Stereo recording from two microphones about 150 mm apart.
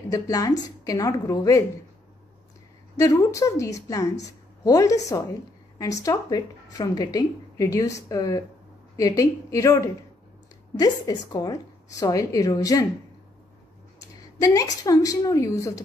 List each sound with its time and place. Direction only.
0.1 s speech: 25° left (ahead or behind)
3.0 s speech: 25° left (ahead or behind)
14.4 s speech: 25° left (ahead or behind)